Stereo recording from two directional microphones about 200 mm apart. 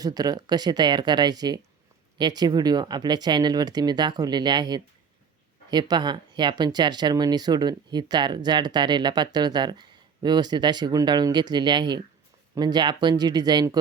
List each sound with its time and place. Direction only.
0.0 s speech: 20° right (ahead or behind)